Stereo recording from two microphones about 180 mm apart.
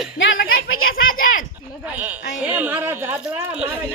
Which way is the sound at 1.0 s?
50° left (ahead or behind).